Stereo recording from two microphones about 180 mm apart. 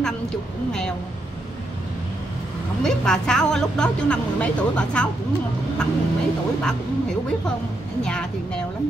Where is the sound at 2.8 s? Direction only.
5° left (ahead or behind).